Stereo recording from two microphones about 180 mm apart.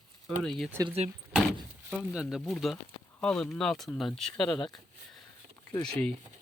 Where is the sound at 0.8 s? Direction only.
35° right (ahead or behind).